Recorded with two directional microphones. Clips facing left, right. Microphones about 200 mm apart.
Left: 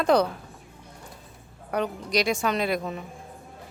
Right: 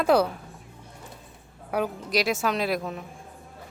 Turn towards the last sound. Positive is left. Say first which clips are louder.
# left 1 dB
turn(degrees=0)  # may be behind; listen again after turning